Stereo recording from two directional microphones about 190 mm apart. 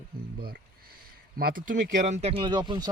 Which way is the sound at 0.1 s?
50° right (ahead or behind).